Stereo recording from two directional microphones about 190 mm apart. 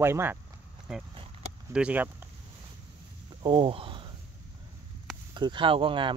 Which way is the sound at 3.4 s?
25° right (ahead or behind).